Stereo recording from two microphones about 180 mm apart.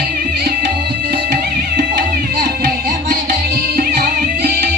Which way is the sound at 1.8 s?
55° right (ahead or behind).